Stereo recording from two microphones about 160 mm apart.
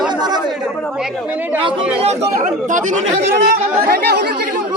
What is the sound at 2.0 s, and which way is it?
Speech, 50° right (ahead or behind).